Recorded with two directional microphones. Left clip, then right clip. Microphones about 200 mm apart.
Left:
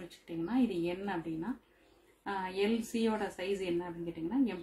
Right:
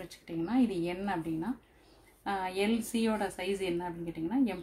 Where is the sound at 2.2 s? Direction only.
35° right (ahead or behind).